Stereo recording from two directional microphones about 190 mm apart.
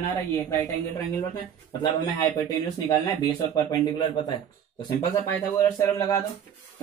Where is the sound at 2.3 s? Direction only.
20° left (ahead or behind).